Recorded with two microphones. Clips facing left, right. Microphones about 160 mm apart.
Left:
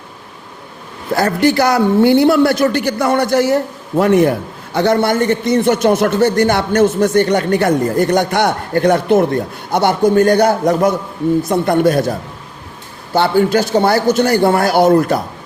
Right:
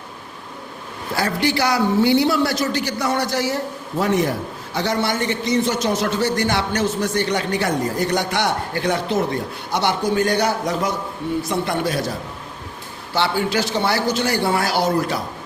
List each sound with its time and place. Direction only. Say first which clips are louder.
1.1 s a man's voice: left 8 dB; 50° left (ahead or behind)
13.1 s a man's voice: left 8 dB; 50° left (ahead or behind)